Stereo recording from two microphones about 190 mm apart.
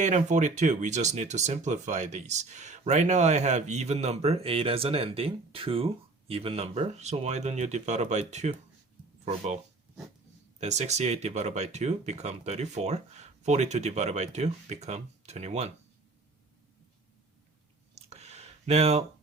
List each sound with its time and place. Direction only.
0.0 s speech: 40° right (ahead or behind)
10.6 s speech: 35° right (ahead or behind)
17.9 s a sound: 35° right (ahead or behind)